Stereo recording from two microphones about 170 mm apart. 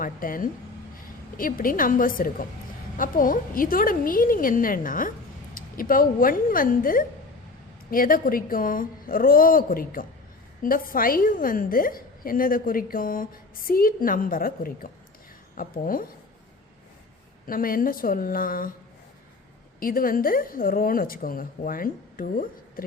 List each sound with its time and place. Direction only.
0.0 s a woman's voice: 55° left (ahead or behind)
17.4 s a woman's voice: 55° left (ahead or behind)
19.8 s a woman's voice: 55° left (ahead or behind)